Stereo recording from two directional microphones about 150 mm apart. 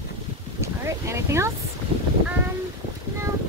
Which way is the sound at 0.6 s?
20° right (ahead or behind).